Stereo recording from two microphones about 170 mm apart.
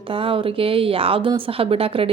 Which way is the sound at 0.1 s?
30° right (ahead or behind).